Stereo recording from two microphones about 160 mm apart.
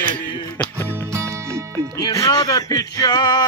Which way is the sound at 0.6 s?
15° left (ahead or behind).